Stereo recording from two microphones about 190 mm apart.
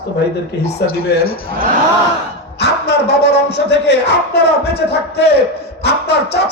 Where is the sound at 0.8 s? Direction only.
60° left (ahead or behind).